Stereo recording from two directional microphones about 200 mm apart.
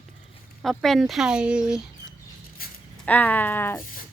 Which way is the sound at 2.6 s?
45° left (ahead or behind).